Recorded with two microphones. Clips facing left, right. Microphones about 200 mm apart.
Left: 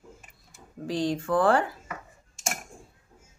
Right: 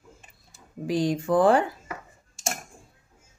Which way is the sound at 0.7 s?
10° right (ahead or behind).